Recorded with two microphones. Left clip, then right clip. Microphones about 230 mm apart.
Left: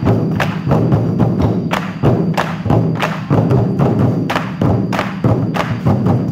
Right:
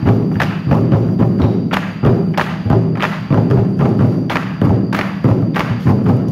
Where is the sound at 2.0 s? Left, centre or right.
Left.